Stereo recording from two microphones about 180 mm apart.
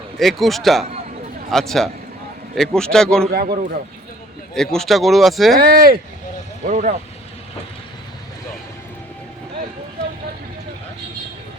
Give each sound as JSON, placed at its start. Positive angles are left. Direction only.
{"t": 0.2, "sound": "speech", "side_deg": 0}
{"t": 3.4, "sound": "a man's voice", "side_deg": -35}
{"t": 4.5, "sound": "speech", "side_deg": 5}
{"t": 5.5, "sound": "speech", "side_deg": -55}